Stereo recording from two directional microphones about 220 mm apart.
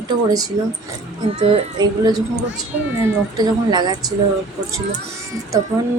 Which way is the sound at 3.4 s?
20° right (ahead or behind).